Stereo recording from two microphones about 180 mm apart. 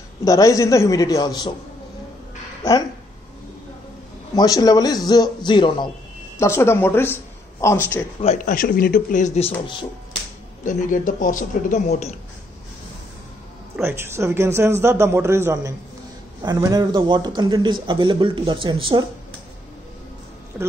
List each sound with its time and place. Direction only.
0.2 s a man's voice: 20° left (ahead or behind)
2.6 s a man's voice: 20° left (ahead or behind)
4.4 s a man's voice: 20° left (ahead or behind)
6.4 s speech: 15° left (ahead or behind)
8.2 s a man's voice: 40° left (ahead or behind)
10.6 s a man's voice: 45° left (ahead or behind)
13.7 s a man's voice: 15° right (ahead or behind)
20.5 s speech: 5° right (ahead or behind)